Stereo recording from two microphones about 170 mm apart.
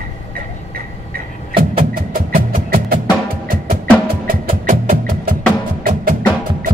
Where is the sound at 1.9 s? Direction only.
60° right (ahead or behind).